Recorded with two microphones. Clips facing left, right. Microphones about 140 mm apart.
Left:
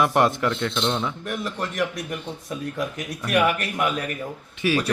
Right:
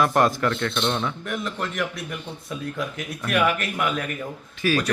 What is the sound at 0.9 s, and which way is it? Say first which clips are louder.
Speech: even; 10° left (ahead or behind).